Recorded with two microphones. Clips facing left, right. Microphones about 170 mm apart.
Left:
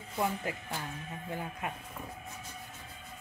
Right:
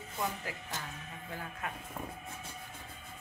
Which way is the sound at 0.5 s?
25° left (ahead or behind).